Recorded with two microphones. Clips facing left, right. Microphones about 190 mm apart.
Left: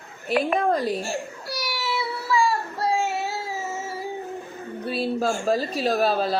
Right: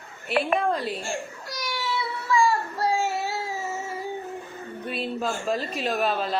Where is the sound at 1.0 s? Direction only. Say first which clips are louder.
Left 2 dB; 10° left (ahead or behind).